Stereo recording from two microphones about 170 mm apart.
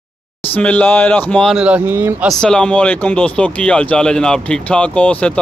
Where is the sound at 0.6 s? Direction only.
10° left (ahead or behind).